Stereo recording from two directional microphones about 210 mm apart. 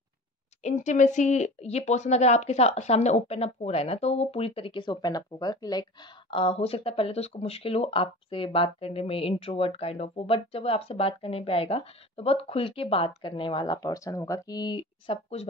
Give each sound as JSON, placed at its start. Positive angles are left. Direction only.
{"t": 0.6, "sound": "speech", "side_deg": 35}